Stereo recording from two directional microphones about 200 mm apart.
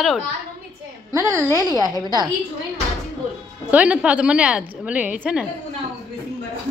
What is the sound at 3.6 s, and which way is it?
A woman's voice, 5° right (ahead or behind).